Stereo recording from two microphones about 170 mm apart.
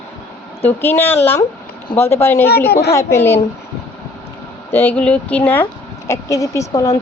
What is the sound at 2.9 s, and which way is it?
Speech, 15° left (ahead or behind).